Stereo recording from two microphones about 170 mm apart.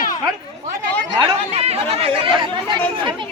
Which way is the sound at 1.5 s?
35° right (ahead or behind).